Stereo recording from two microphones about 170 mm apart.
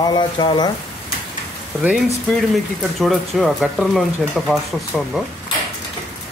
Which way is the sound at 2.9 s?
Centre (ahead or behind).